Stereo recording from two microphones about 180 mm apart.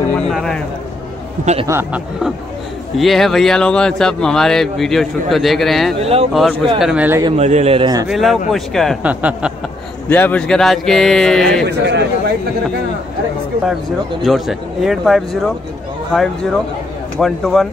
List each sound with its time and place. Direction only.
0.1 s a sound: centre (ahead or behind)
1.4 s speech: 35° right (ahead or behind)
1.7 s speech: 10° right (ahead or behind)
5.9 s speech: 35° right (ahead or behind)
6.3 s speech: centre (ahead or behind)
7.2 s speech: 40° right (ahead or behind)
8.1 s speech: centre (ahead or behind)
10.0 s speech: 10° left (ahead or behind)
11.6 s a man's voice: 70° right (ahead or behind)
14.2 s speech: centre (ahead or behind)
17.2 s speech: centre (ahead or behind)